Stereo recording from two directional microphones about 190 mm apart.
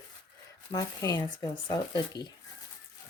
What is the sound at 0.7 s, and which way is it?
Speech, 20° left (ahead or behind).